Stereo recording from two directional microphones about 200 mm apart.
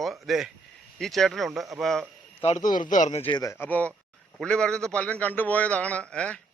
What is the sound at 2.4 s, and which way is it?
A man's voice, 35° left (ahead or behind).